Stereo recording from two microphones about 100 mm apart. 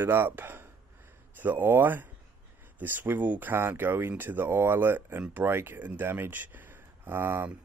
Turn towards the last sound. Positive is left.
turn(degrees=-20)  # may be behind; listen again after turning